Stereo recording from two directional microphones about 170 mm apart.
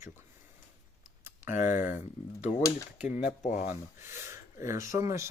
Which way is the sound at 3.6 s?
15° right (ahead or behind).